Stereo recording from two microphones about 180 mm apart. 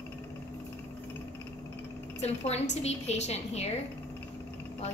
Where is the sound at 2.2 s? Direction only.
35° left (ahead or behind).